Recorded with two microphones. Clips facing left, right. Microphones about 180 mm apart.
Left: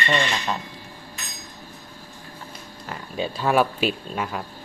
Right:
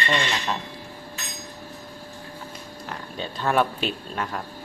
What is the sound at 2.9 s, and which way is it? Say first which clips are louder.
Speech: left 5 dB; 10° left (ahead or behind).